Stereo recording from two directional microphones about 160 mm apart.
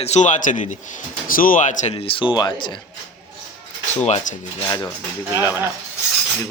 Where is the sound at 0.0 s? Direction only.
45° left (ahead or behind); by 2.7 s 30° left (ahead or behind).